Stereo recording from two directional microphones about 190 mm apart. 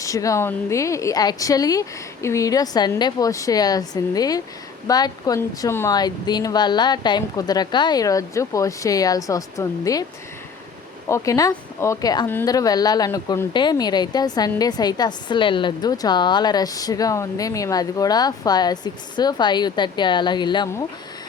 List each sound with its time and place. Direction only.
0.0 s a woman's voice: 15° left (ahead or behind)
11.1 s a woman's voice: 20° left (ahead or behind)